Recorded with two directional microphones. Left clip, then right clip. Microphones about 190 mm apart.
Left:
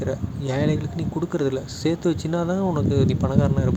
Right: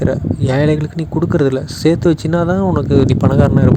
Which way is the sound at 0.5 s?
35° right (ahead or behind).